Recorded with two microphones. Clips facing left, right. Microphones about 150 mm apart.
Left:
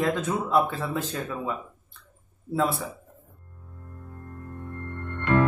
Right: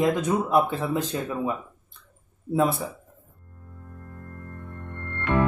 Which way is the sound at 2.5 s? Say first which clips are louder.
Right 3 dB; 15° right (ahead or behind).